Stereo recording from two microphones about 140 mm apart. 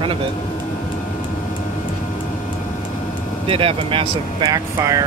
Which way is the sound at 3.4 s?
40° right (ahead or behind).